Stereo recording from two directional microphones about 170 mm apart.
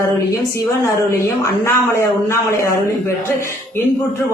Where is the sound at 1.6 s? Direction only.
15° left (ahead or behind).